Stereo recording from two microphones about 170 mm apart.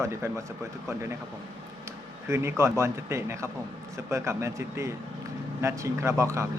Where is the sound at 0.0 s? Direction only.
15° right (ahead or behind).